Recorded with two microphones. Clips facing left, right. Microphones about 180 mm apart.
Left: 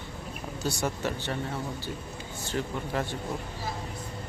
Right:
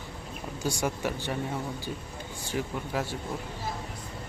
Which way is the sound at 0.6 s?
10° right (ahead or behind).